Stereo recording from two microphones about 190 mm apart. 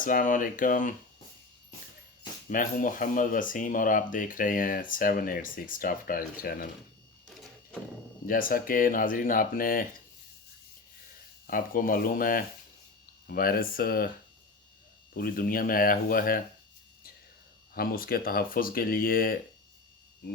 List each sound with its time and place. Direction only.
0.0 s speech: 45° left (ahead or behind)
2.5 s speech: 45° left (ahead or behind)
8.3 s speech: 50° left (ahead or behind)
11.4 s speech: 45° left (ahead or behind)
15.1 s speech: 50° left (ahead or behind)
17.7 s speech: 50° left (ahead or behind)